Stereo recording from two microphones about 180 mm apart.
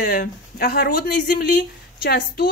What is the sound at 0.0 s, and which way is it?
A woman's voice, 50° left (ahead or behind).